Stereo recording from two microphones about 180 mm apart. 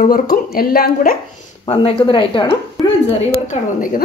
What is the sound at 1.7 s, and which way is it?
Speech, 30° left (ahead or behind).